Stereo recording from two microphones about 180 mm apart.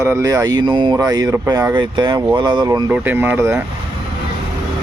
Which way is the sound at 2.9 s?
10° right (ahead or behind).